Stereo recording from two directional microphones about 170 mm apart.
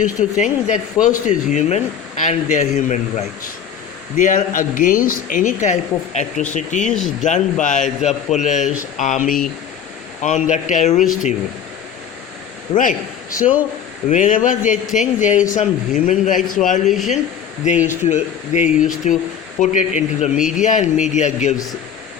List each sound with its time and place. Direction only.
0.0 s speech: 45° left (ahead or behind)
6.8 s speech: 5° left (ahead or behind)
7.2 s speech: 45° left (ahead or behind)
12.7 s a man's voice: 50° left (ahead or behind)
16.9 s speech: centre (ahead or behind)
17.7 s speech: 45° left (ahead or behind)
20.3 s speech: 5° right (ahead or behind)
20.7 s speech: 45° left (ahead or behind)